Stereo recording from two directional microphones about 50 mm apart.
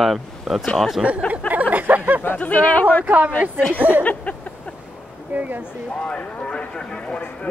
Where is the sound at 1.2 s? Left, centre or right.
Right.